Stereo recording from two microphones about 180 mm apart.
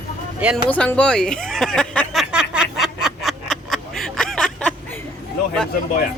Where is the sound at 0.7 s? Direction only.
5° left (ahead or behind).